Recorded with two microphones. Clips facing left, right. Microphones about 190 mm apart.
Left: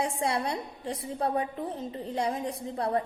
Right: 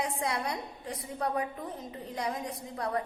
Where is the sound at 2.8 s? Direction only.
30° left (ahead or behind).